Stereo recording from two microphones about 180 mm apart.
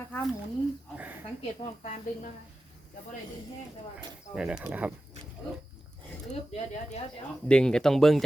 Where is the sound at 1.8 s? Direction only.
40° left (ahead or behind).